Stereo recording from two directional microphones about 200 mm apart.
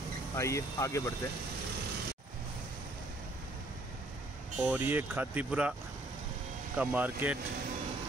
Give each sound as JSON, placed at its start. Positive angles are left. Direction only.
{"t": 0.4, "sound": "speech", "side_deg": 15}
{"t": 4.6, "sound": "speech", "side_deg": -5}
{"t": 6.8, "sound": "speech", "side_deg": -5}